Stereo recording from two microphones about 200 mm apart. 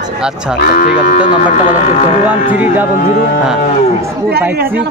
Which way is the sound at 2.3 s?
10° right (ahead or behind).